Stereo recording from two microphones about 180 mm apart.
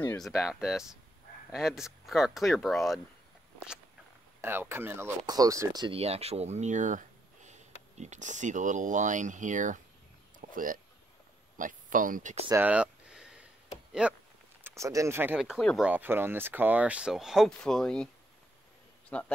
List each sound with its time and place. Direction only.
0.2 s speech: 5° right (ahead or behind)
3.5 s walk: 5° right (ahead or behind)
4.4 s speech: 10° right (ahead or behind); by 12.4 s 45° right (ahead or behind)
12.4 s a sound: 10° right (ahead or behind)
14.0 s speech: 10° right (ahead or behind)
15.9 s a man's voice: 10° right (ahead or behind); by 19.3 s 5° left (ahead or behind)